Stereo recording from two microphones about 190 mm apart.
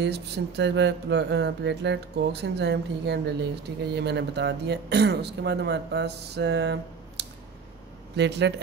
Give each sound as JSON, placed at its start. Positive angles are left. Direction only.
{"t": 0.0, "sound": "speech", "side_deg": -60}